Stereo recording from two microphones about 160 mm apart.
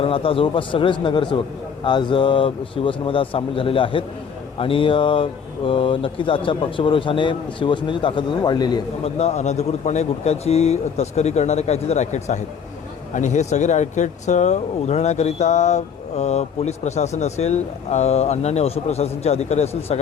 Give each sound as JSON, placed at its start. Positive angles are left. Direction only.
{"t": 0.0, "sound": "a man's voice", "side_deg": 35}
{"t": 9.0, "sound": "speech", "side_deg": 40}